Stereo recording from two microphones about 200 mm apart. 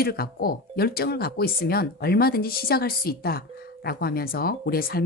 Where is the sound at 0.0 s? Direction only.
50° left (ahead or behind).